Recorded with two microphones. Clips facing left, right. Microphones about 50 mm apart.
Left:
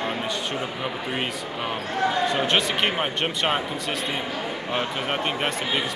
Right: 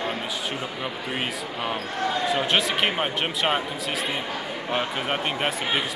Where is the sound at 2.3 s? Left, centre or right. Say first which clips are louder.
Even; centre.